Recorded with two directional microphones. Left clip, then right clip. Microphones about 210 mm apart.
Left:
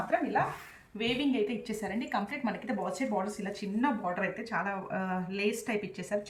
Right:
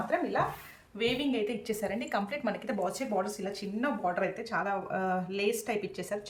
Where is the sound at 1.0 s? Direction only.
55° right (ahead or behind).